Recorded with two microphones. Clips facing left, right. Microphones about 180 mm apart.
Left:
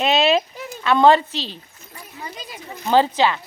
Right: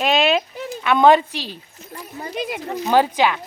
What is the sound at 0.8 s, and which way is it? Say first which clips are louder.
Speech: even; 15° right (ahead or behind).